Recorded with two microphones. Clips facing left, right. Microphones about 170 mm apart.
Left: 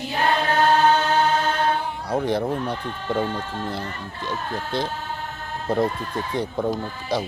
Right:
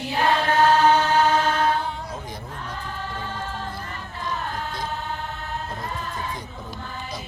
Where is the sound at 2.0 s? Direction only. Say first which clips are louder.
Left 13 dB; 65° left (ahead or behind).